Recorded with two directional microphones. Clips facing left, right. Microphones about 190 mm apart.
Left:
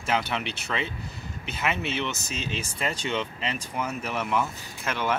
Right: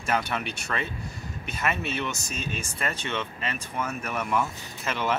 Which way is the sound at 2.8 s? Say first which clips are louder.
Left 2 dB; 15° left (ahead or behind).